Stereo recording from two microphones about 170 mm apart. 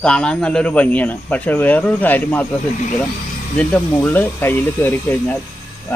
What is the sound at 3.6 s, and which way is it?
A man's voice, 10° left (ahead or behind).